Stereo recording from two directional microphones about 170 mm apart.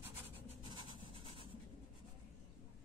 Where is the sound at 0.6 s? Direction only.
30° right (ahead or behind).